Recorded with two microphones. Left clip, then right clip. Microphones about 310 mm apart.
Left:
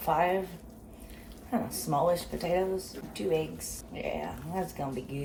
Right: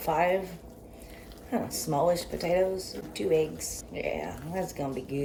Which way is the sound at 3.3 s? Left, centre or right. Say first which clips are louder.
Right 5 dB; centre.